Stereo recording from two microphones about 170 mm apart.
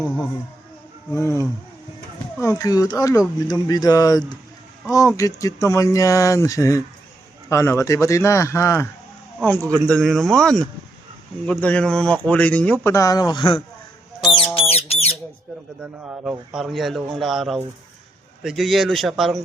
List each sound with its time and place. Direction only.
1.1 s speech: 20° left (ahead or behind); by 10.6 s centre (ahead or behind)
11.6 s speech: 5° left (ahead or behind); by 13.6 s 30° left (ahead or behind)
14.3 s squawk: 30° left (ahead or behind)
14.7 s bird: 35° left (ahead or behind)
15.8 s speech: 5° right (ahead or behind)